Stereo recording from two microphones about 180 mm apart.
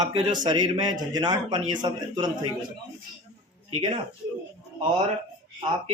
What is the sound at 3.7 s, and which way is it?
Speech, 35° right (ahead or behind).